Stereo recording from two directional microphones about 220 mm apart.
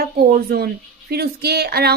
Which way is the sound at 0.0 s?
45° right (ahead or behind).